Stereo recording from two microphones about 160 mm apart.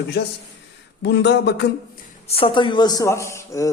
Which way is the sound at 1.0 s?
90° left.